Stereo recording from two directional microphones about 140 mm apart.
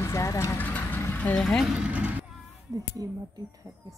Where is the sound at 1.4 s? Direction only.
Centre (ahead or behind).